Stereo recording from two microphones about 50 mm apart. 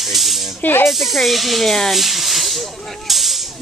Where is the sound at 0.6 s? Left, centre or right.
Left.